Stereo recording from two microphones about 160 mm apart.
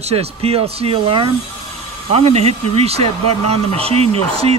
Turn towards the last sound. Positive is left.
turn(degrees=-40)  # may be behind; listen again after turning